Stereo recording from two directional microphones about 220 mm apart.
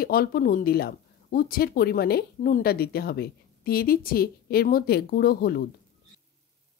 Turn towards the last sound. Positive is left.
turn(degrees=45)  # may be behind; listen again after turning